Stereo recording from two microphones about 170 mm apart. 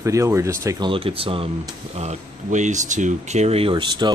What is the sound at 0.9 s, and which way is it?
Speech, 30° right (ahead or behind).